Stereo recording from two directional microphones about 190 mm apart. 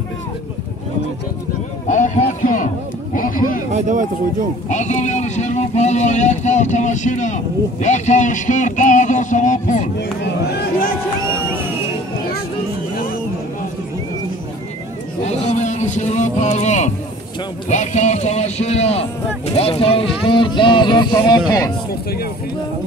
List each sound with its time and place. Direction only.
1.9 s a sound: 40° left (ahead or behind)
3.2 s sheep: 45° left (ahead or behind)
3.7 s speech: 40° right (ahead or behind)
4.6 s speech: 40° left (ahead or behind)
9.9 s speech: 60° left (ahead or behind)
15.2 s speech: 35° left (ahead or behind); by 21.7 s 20° left (ahead or behind)